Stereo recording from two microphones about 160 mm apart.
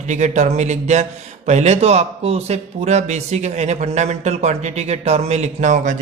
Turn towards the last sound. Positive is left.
turn(degrees=-50)  # may be behind; listen again after turning